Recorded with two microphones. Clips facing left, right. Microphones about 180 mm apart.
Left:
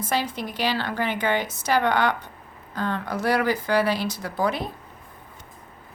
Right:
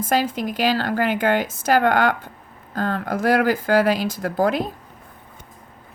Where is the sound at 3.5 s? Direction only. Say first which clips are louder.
Right 4 dB; 90° right.